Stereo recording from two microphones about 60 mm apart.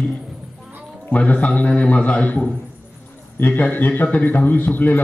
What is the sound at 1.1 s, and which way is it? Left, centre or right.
A man's voice, left.